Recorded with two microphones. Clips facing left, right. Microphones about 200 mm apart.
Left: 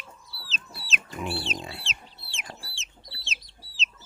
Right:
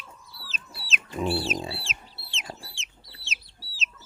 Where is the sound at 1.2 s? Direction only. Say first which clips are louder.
Right 6 dB; 30° right (ahead or behind).